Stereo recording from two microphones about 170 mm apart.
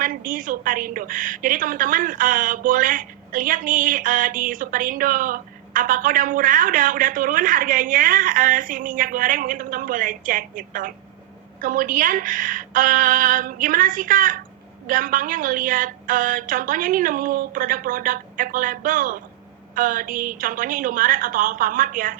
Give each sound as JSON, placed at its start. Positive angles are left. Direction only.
{"t": 0.0, "sound": "a woman's voice", "side_deg": -55}